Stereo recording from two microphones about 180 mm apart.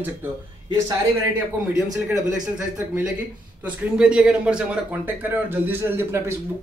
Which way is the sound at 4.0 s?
5° right (ahead or behind).